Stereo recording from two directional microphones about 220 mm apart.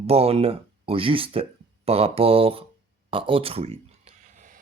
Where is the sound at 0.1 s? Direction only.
25° right (ahead or behind).